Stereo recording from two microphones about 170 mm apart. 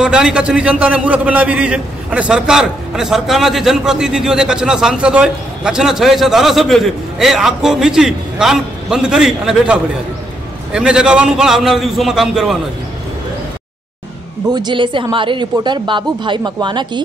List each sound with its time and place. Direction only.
0.0 s a man's voice: 5° right (ahead or behind)
14.5 s speech: 25° right (ahead or behind)